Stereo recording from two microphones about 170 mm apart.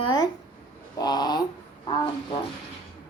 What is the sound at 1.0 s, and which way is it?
A woman's voice, 25° left (ahead or behind).